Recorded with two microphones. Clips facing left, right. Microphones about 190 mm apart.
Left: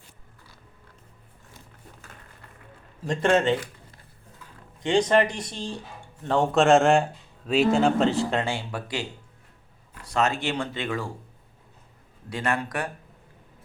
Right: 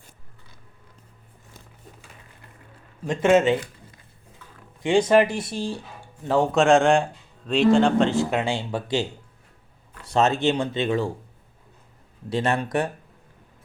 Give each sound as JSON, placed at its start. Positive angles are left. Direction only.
{"t": 3.1, "sound": "speech", "side_deg": -5}
{"t": 4.8, "sound": "speech", "side_deg": -10}
{"t": 10.1, "sound": "speech", "side_deg": -25}
{"t": 12.3, "sound": "speech", "side_deg": -25}